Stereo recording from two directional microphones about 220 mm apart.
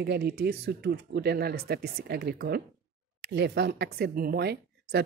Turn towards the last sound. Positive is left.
turn(degrees=-45)  # may be behind; listen again after turning